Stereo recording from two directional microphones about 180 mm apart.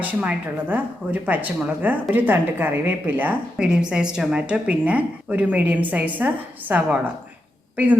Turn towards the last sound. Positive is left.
turn(degrees=-10)  # may be behind; listen again after turning